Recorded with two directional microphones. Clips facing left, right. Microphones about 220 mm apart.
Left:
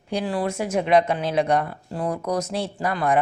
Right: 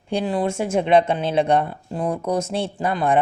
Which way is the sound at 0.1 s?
25° right (ahead or behind).